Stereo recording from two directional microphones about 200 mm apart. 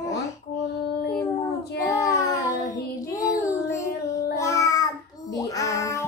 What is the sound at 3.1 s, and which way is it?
Child singing, 15° left (ahead or behind).